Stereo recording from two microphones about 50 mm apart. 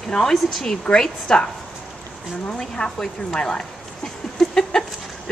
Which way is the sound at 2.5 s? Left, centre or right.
Centre.